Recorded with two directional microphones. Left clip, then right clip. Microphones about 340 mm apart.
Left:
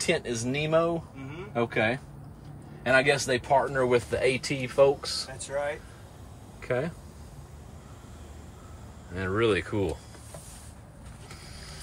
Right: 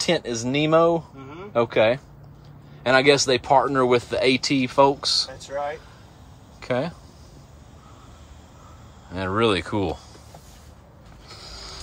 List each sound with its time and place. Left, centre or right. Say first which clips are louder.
0.5 s speech: right 8 dB; centre
9.1 s speech: right 4 dB; centre